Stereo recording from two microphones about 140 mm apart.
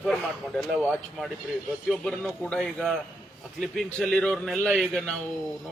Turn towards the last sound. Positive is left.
turn(degrees=5)  # may be behind; listen again after turning